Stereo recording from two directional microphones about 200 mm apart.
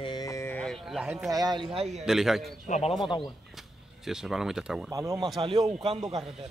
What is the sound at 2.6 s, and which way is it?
Speech, 35° left (ahead or behind).